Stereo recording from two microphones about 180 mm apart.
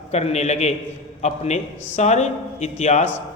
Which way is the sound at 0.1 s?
40° left (ahead or behind).